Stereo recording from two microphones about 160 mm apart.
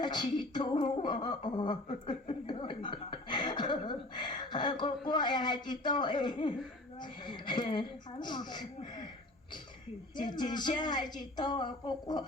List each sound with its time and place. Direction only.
0.0 s a sound: 25° left (ahead or behind)
5.0 s speech: 30° left (ahead or behind)
10.2 s speech: 25° left (ahead or behind)